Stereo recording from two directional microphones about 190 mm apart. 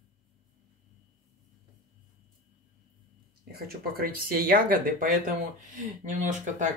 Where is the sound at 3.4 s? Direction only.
55° right (ahead or behind).